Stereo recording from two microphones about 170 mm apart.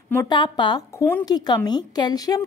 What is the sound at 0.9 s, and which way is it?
A woman's voice, 15° left (ahead or behind).